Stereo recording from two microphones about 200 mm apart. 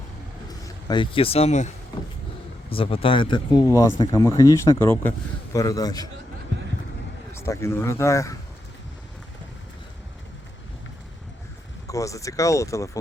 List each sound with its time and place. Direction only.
0.6 s speech: 20° left (ahead or behind)
7.3 s speech: 15° left (ahead or behind)
11.9 s speech: 15° left (ahead or behind)